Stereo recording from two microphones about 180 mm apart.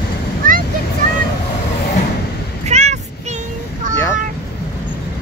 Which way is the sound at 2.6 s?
40° right (ahead or behind).